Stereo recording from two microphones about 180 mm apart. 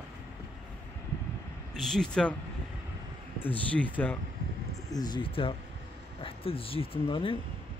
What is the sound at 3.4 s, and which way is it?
Speech, 10° left (ahead or behind).